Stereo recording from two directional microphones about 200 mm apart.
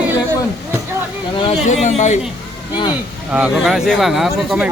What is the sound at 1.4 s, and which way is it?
Speech, 35° left (ahead or behind).